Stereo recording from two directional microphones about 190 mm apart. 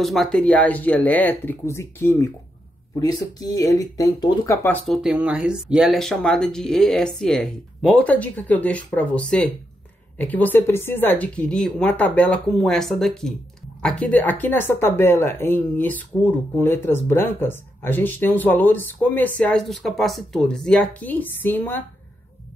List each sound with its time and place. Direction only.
0.0 s speech: centre (ahead or behind)
5.0 s speech: 5° right (ahead or behind); by 21.8 s 10° left (ahead or behind)